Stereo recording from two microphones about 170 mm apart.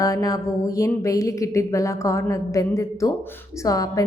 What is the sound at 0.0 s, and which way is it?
Music, 20° left (ahead or behind).